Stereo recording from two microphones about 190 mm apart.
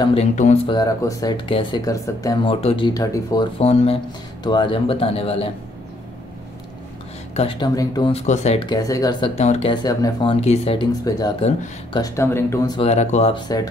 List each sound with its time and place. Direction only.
0.0 s speech: 30° left (ahead or behind)
0.7 s speech: 20° left (ahead or behind)
3.5 s speech: 35° left (ahead or behind)
7.3 s speech: 25° left (ahead or behind)
8.1 s speech: 35° left (ahead or behind)
8.6 s speech: 20° left (ahead or behind)
9.3 s speech: 35° left (ahead or behind)
10.3 s speech: 35° left (ahead or behind); by 12.8 s 15° left (ahead or behind)
12.8 s speech: 35° left (ahead or behind)